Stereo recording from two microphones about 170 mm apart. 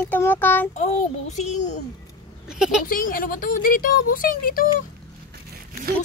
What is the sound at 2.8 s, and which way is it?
Speech, 55° left (ahead or behind).